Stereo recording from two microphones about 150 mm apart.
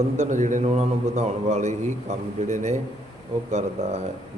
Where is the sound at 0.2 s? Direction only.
55° right (ahead or behind).